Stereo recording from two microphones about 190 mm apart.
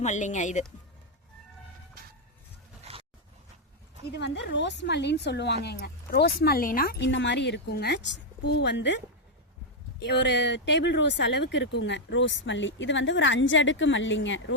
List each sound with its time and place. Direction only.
0.0 s speech: 40° left (ahead or behind)
2.8 s a sound: 30° right (ahead or behind)
4.2 s speech: 65° left (ahead or behind)
10.0 s speech: 65° left (ahead or behind); by 14.5 s 85° left